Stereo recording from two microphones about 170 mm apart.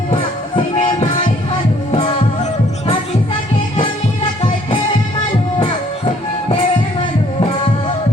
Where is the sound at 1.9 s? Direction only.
30° left (ahead or behind).